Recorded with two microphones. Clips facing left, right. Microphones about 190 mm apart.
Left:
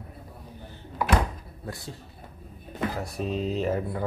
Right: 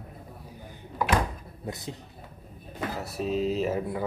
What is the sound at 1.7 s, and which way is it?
Speech, 20° right (ahead or behind).